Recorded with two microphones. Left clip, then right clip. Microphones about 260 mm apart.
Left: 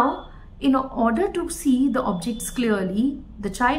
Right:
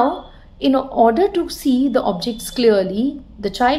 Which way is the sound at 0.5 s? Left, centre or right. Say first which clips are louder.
Right 6 dB; centre.